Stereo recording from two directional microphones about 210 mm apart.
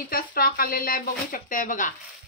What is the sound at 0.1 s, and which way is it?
A woman's voice, 45° left (ahead or behind).